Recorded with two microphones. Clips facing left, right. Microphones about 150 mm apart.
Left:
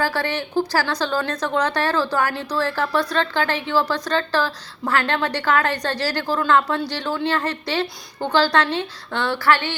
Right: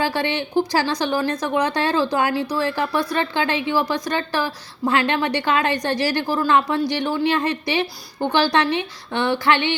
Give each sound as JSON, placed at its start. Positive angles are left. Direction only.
{"t": 0.0, "sound": "a woman's voice", "side_deg": -15}